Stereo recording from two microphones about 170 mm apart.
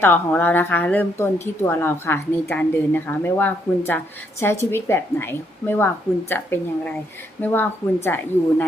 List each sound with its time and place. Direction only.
0.0 s speech: 10° left (ahead or behind)